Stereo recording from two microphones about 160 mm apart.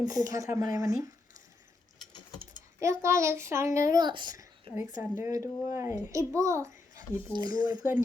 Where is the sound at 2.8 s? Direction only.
20° right (ahead or behind).